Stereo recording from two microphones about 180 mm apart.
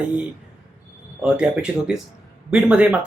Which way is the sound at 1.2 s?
5° right (ahead or behind).